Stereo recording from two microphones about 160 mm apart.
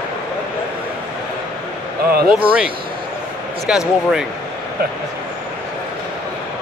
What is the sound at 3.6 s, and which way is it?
Speech, 5° right (ahead or behind).